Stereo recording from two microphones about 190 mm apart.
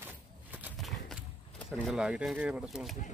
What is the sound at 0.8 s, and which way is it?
Horse, centre (ahead or behind).